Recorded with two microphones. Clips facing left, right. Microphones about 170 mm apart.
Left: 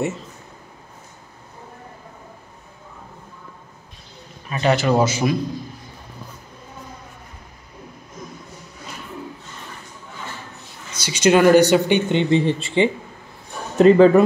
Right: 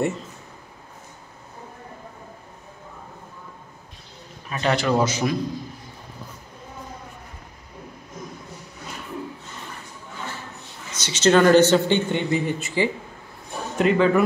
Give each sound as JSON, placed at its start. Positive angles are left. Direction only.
{"t": 4.5, "sound": "speech", "side_deg": 5}
{"t": 10.9, "sound": "speech", "side_deg": 10}